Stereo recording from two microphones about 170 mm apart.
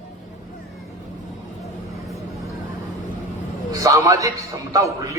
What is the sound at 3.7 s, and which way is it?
A man's voice, 20° right (ahead or behind).